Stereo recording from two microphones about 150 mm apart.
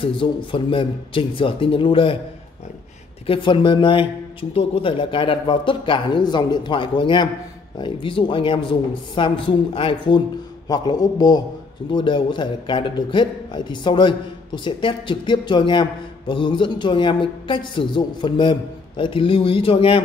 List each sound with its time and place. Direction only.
0.0 s a man's voice: 35° left (ahead or behind)
3.3 s a man's voice: 35° left (ahead or behind)